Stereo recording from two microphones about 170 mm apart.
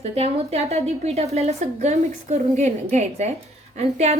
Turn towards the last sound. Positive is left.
turn(degrees=-40)  # may be behind; listen again after turning